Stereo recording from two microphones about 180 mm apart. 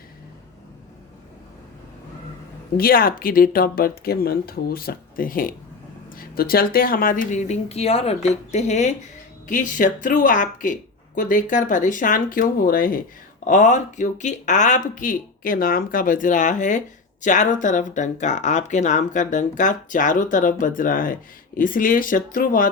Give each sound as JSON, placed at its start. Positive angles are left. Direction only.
{"t": 2.7, "sound": "speech", "side_deg": 55}